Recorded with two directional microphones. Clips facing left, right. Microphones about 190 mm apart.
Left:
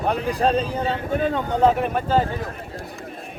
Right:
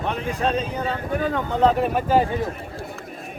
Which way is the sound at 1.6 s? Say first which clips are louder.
Even; centre (ahead or behind).